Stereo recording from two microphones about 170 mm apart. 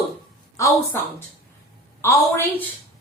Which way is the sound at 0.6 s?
15° left (ahead or behind).